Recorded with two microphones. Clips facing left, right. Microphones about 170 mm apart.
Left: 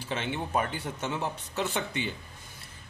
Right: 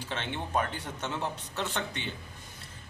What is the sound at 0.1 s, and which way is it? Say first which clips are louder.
Speech: left 2 dB; 5° left (ahead or behind).